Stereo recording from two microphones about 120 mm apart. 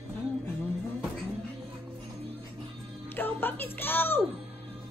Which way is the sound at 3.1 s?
15° left (ahead or behind).